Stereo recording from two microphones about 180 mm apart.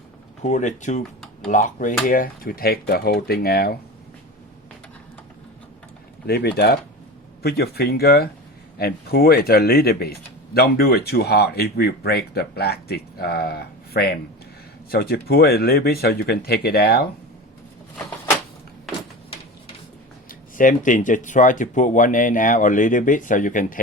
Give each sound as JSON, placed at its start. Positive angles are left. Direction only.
{"t": 0.4, "sound": "speech", "side_deg": 40}
{"t": 6.2, "sound": "speech", "side_deg": 65}
{"t": 20.6, "sound": "speech", "side_deg": 45}